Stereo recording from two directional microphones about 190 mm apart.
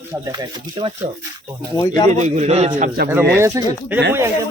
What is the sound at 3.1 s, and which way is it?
Speech, 10° right (ahead or behind).